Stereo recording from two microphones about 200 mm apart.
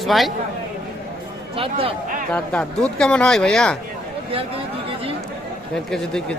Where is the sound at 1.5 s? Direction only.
30° right (ahead or behind).